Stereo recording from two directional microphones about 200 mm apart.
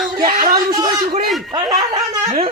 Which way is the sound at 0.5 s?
20° right (ahead or behind).